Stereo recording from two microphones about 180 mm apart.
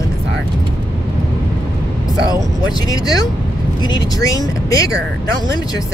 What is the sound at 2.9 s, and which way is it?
Speech, 20° left (ahead or behind).